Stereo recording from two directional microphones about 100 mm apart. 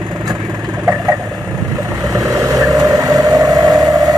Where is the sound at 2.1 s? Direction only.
35° right (ahead or behind).